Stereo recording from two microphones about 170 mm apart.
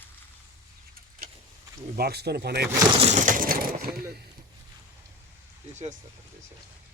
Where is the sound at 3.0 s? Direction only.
45° right (ahead or behind).